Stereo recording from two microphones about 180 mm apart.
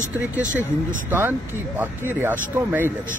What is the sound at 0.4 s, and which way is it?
Speech, 45° right (ahead or behind).